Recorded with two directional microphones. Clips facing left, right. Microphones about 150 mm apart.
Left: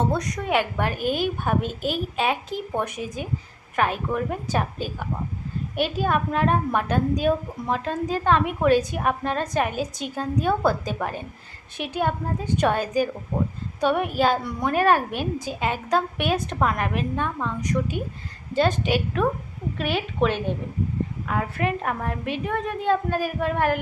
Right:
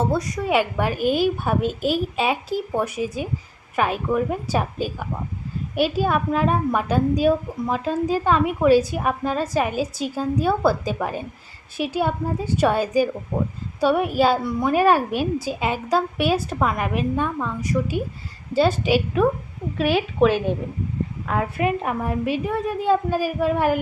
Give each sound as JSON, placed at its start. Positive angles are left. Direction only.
{"t": 0.0, "sound": "a child's voice", "side_deg": -5}
{"t": 13.8, "sound": "a child's voice", "side_deg": -5}